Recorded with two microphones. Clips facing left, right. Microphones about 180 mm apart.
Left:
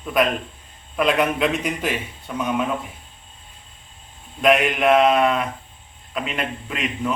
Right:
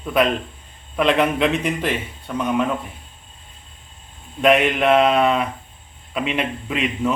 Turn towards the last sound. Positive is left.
turn(degrees=-5)  # may be behind; listen again after turning